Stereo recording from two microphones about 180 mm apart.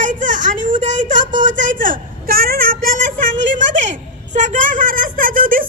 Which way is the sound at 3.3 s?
90° right.